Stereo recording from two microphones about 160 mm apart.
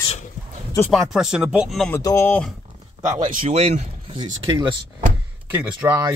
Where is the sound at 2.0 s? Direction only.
15° left (ahead or behind).